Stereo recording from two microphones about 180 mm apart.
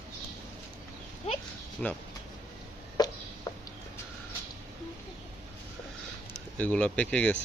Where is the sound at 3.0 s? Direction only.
20° left (ahead or behind).